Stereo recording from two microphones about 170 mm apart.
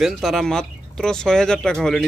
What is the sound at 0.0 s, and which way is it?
Speech, centre (ahead or behind).